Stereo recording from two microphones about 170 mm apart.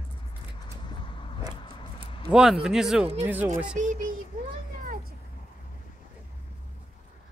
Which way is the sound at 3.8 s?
50° right (ahead or behind).